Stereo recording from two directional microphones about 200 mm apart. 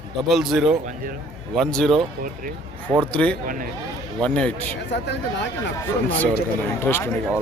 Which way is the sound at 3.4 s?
45° right (ahead or behind).